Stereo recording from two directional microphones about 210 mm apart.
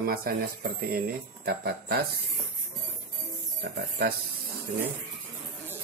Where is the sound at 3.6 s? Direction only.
50° right (ahead or behind).